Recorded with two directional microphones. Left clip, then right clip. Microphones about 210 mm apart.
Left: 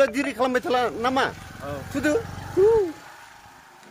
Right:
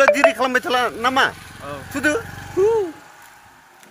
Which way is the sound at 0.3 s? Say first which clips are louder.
Right 4 dB; 5° right (ahead or behind).